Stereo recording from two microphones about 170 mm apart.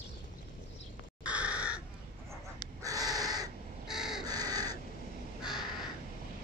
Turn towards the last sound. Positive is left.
turn(degrees=0)  # may be behind; listen again after turning